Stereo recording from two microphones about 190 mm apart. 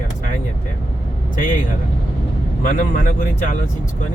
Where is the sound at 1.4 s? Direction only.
45° left (ahead or behind).